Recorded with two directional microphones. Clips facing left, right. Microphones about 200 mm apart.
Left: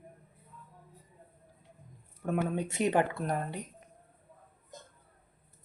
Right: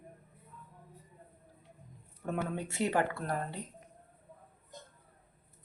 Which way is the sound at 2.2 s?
10° left (ahead or behind).